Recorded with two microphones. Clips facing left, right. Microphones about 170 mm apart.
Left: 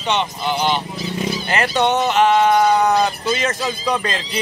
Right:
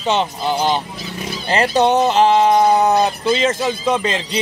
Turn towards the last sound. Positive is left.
turn(degrees=-20)  # may be behind; listen again after turning